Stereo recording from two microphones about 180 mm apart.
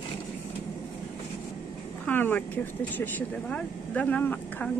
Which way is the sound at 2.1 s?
10° left (ahead or behind).